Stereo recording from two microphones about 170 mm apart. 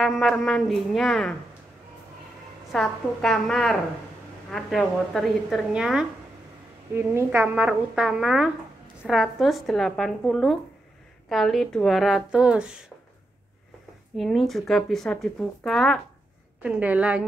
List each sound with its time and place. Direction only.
0.0 s speech: centre (ahead or behind)
2.7 s a woman's voice: centre (ahead or behind)
14.1 s a woman's voice: centre (ahead or behind)